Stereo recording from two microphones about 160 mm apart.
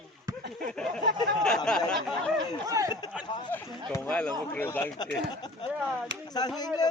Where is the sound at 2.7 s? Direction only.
20° right (ahead or behind).